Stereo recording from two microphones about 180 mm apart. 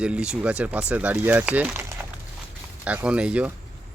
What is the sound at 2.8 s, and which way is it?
Speech, 5° right (ahead or behind).